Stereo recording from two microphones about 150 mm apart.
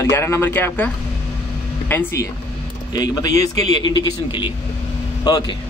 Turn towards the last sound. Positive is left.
turn(degrees=30)  # may be behind; listen again after turning